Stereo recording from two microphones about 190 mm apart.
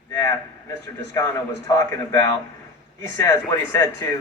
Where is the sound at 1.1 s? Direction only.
15° left (ahead or behind).